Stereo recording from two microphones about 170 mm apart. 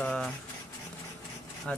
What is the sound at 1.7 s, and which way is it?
Speech, 5° left (ahead or behind).